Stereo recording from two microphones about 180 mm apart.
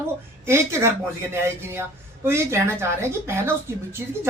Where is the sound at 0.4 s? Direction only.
15° right (ahead or behind).